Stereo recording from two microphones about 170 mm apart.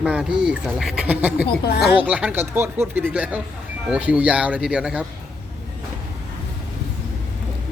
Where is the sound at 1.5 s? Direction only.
70° left (ahead or behind).